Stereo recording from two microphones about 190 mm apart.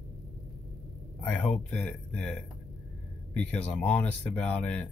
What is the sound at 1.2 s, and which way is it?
Speech, 5° left (ahead or behind).